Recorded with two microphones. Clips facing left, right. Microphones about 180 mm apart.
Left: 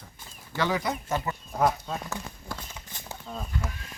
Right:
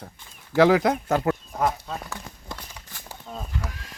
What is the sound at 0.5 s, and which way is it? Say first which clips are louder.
Speech: right 10 dB; 90° right.